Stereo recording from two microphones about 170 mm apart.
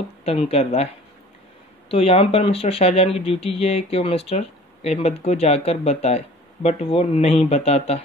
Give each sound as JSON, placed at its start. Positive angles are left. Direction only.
{"t": 0.2, "sound": "speech", "side_deg": 35}
{"t": 1.9, "sound": "speech", "side_deg": 35}